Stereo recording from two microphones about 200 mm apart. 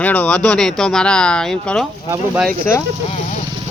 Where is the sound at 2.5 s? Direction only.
10° left (ahead or behind).